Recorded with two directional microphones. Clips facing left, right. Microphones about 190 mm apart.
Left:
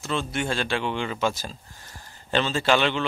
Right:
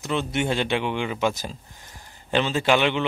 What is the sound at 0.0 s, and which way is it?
Speech, 20° right (ahead or behind).